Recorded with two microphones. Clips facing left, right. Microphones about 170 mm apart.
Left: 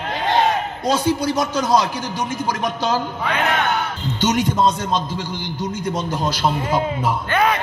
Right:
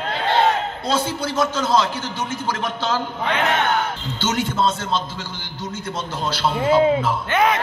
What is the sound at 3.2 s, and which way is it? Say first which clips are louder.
Speech: right 2 dB; 25° right (ahead or behind).